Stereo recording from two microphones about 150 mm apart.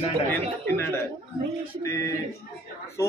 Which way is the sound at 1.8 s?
20° left (ahead or behind).